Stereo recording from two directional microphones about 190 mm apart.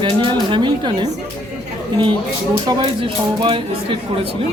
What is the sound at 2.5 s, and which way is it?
Speech, 20° right (ahead or behind).